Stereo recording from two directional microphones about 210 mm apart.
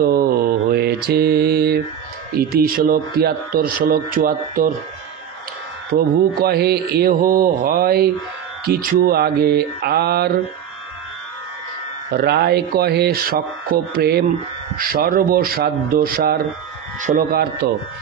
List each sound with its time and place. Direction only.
0.0 s mantra: 45° right (ahead or behind)
2.3 s speech: 45° right (ahead or behind)
5.9 s speech: 50° right (ahead or behind)
12.1 s speech: 50° right (ahead or behind)